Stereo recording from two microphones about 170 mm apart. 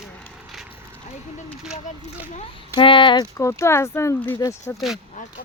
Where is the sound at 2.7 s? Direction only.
30° left (ahead or behind).